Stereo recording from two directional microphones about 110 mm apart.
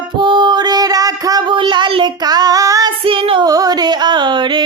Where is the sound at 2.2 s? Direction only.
35° right (ahead or behind).